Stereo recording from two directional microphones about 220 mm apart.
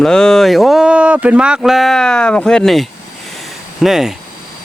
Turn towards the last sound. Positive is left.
turn(degrees=0)  # may be behind; listen again after turning